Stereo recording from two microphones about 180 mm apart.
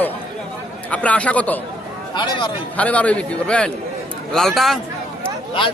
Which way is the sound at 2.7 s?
5° left (ahead or behind).